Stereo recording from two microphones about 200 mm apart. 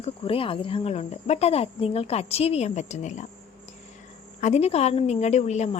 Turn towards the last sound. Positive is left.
turn(degrees=35)  # may be behind; listen again after turning